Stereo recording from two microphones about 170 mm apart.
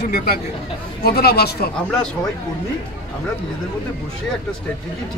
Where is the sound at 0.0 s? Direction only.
65° left (ahead or behind).